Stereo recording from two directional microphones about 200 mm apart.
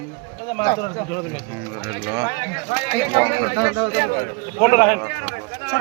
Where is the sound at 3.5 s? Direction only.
20° right (ahead or behind).